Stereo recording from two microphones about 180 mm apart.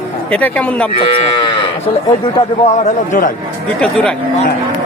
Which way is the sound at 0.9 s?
30° left (ahead or behind).